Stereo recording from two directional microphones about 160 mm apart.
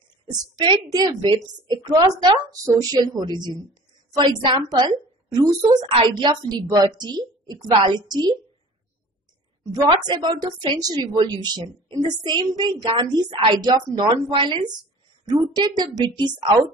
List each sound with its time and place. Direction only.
0.6 s a woman's voice: 25° right (ahead or behind)
9.8 s a woman's voice: 30° right (ahead or behind)